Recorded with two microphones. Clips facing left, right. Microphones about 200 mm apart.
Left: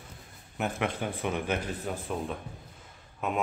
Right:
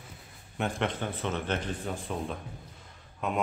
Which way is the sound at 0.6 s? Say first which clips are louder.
Even; 5° left (ahead or behind).